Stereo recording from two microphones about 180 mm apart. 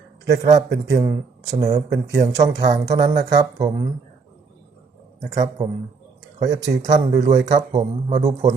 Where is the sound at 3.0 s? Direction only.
40° right (ahead or behind).